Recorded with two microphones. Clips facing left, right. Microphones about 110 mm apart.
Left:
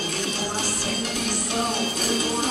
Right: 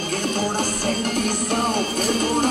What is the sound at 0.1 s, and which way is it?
Music, 50° right (ahead or behind).